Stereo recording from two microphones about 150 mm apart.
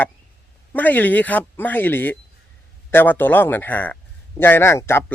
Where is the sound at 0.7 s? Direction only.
10° left (ahead or behind).